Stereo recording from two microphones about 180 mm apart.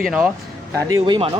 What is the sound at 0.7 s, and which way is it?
Speech, 20° right (ahead or behind).